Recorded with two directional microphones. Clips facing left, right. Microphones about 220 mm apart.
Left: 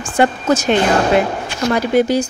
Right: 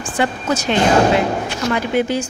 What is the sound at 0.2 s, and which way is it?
Speech, 50° left (ahead or behind).